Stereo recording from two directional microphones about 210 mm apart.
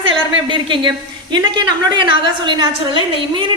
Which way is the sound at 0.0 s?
25° right (ahead or behind).